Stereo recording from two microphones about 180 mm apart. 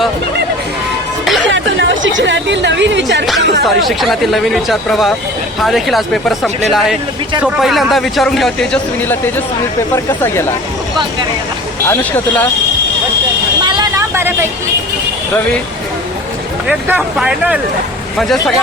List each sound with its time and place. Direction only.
1.5 s speech: 90° right
3.8 s speech: centre (ahead or behind)
11.9 s speech: 10° left (ahead or behind)
13.7 s vehicle: 25° right (ahead or behind)
16.6 s speech: 5° right (ahead or behind)